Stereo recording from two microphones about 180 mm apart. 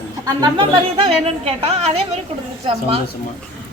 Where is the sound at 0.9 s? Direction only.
30° right (ahead or behind).